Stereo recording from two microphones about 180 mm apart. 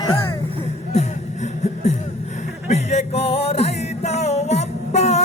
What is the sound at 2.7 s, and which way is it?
Music, 35° left (ahead or behind).